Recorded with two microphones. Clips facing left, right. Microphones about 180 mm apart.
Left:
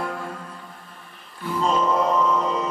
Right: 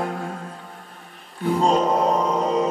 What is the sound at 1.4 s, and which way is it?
Music, 45° right (ahead or behind).